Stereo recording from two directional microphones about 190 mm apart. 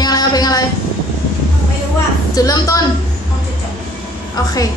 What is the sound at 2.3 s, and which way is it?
Speech, 20° left (ahead or behind).